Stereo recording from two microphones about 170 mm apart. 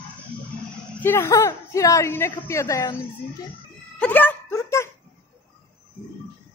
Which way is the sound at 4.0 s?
10° left (ahead or behind).